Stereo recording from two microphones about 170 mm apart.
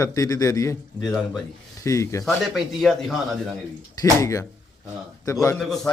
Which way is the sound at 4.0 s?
20° left (ahead or behind).